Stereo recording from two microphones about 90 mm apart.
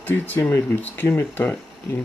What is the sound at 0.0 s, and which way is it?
Speech, 20° left (ahead or behind).